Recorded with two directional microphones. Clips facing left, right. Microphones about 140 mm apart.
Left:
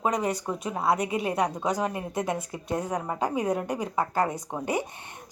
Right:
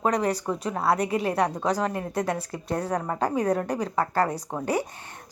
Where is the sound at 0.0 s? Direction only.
20° left (ahead or behind).